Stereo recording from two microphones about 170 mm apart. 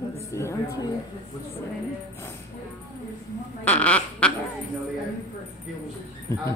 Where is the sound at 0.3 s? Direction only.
15° left (ahead or behind).